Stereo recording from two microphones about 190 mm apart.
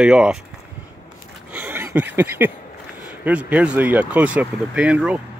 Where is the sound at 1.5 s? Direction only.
10° right (ahead or behind).